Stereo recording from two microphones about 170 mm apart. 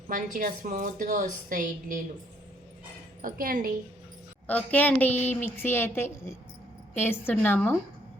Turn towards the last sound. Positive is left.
turn(degrees=10)  # may be behind; listen again after turning